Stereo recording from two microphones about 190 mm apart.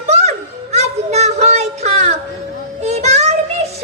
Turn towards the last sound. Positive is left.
turn(degrees=-35)  # may be behind; listen again after turning